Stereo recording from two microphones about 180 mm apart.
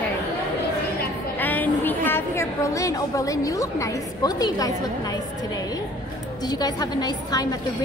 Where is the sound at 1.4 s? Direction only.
10° left (ahead or behind).